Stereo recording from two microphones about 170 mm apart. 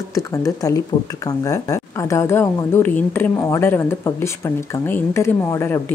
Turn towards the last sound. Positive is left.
turn(degrees=15)  # may be behind; listen again after turning